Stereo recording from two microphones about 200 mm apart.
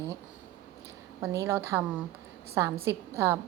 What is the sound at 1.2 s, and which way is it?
A woman's voice, 10° right (ahead or behind).